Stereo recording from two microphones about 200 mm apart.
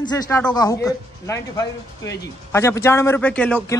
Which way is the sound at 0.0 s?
20° left (ahead or behind).